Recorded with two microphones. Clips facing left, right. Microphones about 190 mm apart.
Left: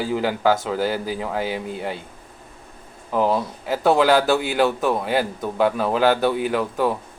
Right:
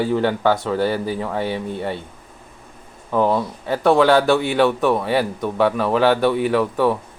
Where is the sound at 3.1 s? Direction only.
5° left (ahead or behind).